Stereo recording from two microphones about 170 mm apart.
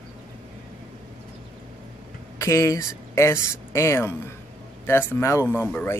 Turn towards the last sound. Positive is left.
turn(degrees=10)  # may be behind; listen again after turning